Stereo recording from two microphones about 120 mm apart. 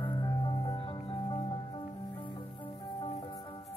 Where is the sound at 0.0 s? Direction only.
40° left (ahead or behind).